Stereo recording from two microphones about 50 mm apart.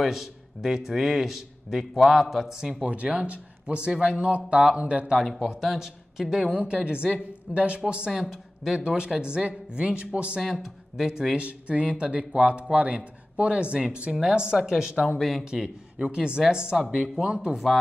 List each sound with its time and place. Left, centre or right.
0.0 s speech: centre
2.8 s speech: right
5.2 s speech: centre
8.1 s a man's voice: centre
10.4 s speech: centre
11.4 s speech: right; by 15.4 s centre
15.4 s speech: centre